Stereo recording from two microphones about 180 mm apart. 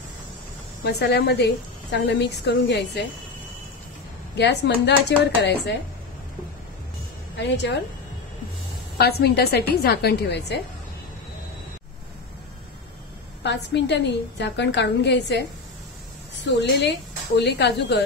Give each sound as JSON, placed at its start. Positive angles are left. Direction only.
{"t": 0.8, "sound": "a woman's voice", "side_deg": 65}
{"t": 4.4, "sound": "a woman's voice", "side_deg": 70}
{"t": 7.3, "sound": "a woman's voice", "side_deg": 75}
{"t": 8.9, "sound": "a woman's voice", "side_deg": 60}
{"t": 13.4, "sound": "a woman's voice", "side_deg": 70}
{"t": 16.4, "sound": "a woman's voice", "side_deg": 70}